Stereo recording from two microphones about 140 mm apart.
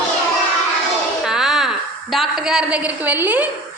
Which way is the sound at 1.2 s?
5° right (ahead or behind).